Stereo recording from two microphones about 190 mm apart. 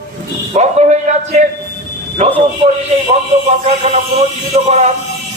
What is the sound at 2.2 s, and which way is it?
A man's voice, 35° right (ahead or behind).